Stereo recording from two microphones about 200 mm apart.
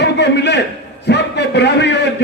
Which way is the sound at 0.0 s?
60° left (ahead or behind).